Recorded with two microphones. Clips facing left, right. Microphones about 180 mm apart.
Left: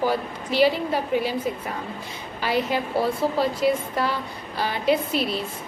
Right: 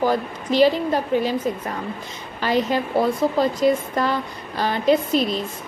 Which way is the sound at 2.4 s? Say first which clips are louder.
Right 3 dB; 10° left (ahead or behind).